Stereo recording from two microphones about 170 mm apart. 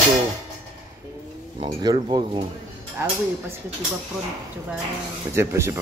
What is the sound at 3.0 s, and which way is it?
Speech, 15° right (ahead or behind).